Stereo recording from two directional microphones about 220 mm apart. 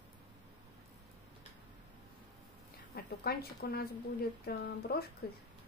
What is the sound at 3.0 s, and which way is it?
A woman's voice, 45° left (ahead or behind).